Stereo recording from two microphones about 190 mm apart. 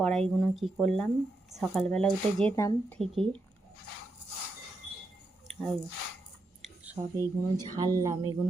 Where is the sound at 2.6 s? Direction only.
15° left (ahead or behind).